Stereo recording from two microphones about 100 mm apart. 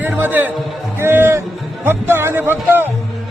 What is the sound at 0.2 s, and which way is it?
Speech, 20° right (ahead or behind).